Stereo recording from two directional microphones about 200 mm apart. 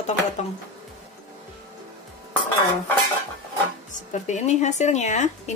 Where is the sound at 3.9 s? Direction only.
35° left (ahead or behind).